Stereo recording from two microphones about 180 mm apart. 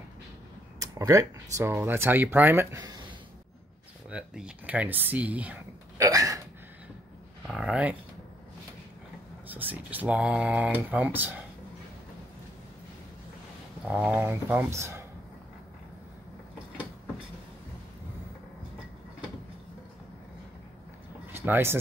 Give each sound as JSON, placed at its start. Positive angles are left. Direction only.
{"t": 0.7, "sound": "speech", "side_deg": -20}
{"t": 4.1, "sound": "speech", "side_deg": -5}
{"t": 6.0, "sound": "hiccup", "side_deg": -20}
{"t": 7.4, "sound": "speech", "side_deg": 0}
{"t": 9.5, "sound": "speech", "side_deg": -10}
{"t": 13.8, "sound": "speech", "side_deg": -5}
{"t": 21.3, "sound": "a sound", "side_deg": -10}